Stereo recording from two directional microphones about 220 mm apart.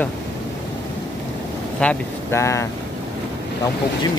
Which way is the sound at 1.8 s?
10° left (ahead or behind).